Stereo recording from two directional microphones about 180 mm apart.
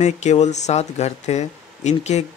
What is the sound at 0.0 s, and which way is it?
Speech, 40° left (ahead or behind).